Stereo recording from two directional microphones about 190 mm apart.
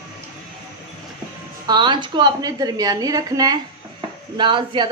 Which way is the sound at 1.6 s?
25° right (ahead or behind).